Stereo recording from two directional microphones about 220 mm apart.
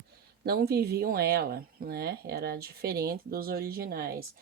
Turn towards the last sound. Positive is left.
turn(degrees=-45)  # may be behind; listen again after turning